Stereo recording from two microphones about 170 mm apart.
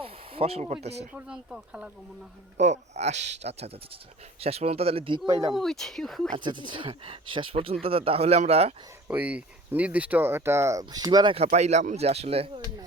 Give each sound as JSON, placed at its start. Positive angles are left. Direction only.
{"t": 0.0, "sound": "a sound", "side_deg": -35}
{"t": 1.1, "sound": "speech", "side_deg": -5}
{"t": 2.6, "sound": "speech", "side_deg": -40}
{"t": 5.5, "sound": "speech", "side_deg": 0}
{"t": 6.3, "sound": "speech", "side_deg": -30}
{"t": 9.0, "sound": "speech", "side_deg": -10}
{"t": 11.4, "sound": "speech", "side_deg": -40}